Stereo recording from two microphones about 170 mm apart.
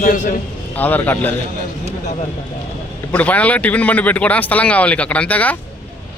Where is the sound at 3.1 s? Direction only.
10° left (ahead or behind).